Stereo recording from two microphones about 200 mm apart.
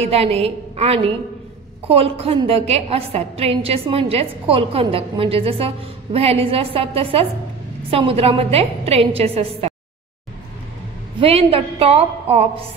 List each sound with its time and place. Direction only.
0.0 s a woman's voice: 30° right (ahead or behind)
11.1 s a woman's voice: 30° right (ahead or behind)